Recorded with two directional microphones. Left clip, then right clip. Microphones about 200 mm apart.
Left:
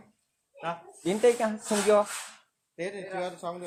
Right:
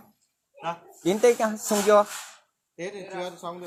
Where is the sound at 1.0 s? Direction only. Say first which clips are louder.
Right 3 dB; 45° right (ahead or behind).